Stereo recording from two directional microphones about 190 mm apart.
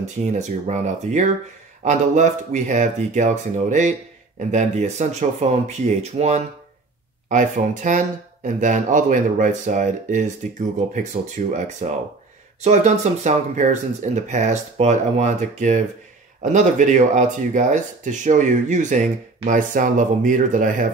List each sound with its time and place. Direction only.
0.2 s speech: 40° right (ahead or behind)